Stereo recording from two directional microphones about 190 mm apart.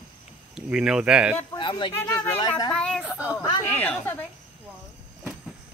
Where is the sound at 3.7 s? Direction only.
10° left (ahead or behind).